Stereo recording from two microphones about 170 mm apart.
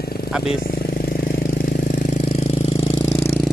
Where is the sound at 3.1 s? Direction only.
15° left (ahead or behind).